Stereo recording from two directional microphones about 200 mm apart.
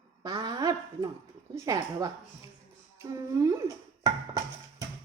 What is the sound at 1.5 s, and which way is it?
Speech, 15° right (ahead or behind).